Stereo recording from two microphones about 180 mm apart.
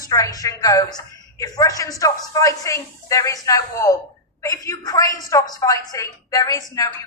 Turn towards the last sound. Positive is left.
turn(degrees=20)  # may be behind; listen again after turning